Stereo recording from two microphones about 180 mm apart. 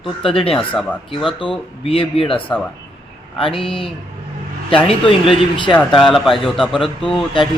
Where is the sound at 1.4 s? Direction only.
30° left (ahead or behind).